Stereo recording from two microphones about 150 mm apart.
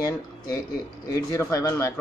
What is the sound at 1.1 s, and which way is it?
Speech, 20° left (ahead or behind).